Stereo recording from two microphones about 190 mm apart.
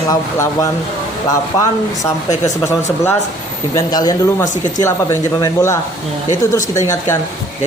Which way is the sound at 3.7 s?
20° left (ahead or behind).